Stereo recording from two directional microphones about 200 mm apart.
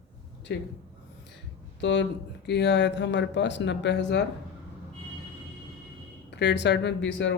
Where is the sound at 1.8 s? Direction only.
65° left (ahead or behind).